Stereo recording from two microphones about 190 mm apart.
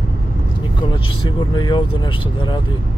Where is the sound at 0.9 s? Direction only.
25° left (ahead or behind).